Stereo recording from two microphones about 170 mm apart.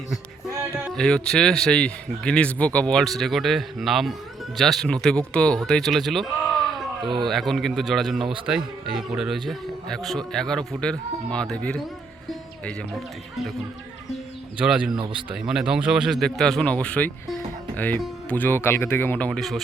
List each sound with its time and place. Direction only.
0.9 s a man's voice: 5° left (ahead or behind)
7.0 s speech: 25° right (ahead or behind)
7.3 s a man's voice: centre (ahead or behind)
14.6 s a man's voice: 5° right (ahead or behind)